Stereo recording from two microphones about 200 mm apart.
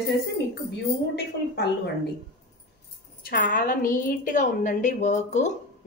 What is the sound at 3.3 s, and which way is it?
A woman's voice, 40° left (ahead or behind).